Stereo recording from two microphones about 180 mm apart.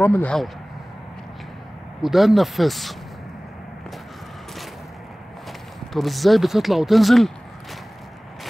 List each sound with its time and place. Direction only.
0.0 s speech: 10° left (ahead or behind)
2.0 s speech: centre (ahead or behind)
5.9 s speech: centre (ahead or behind)